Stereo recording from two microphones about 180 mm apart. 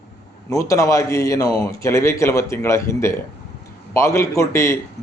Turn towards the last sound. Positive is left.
turn(degrees=15)  # may be behind; listen again after turning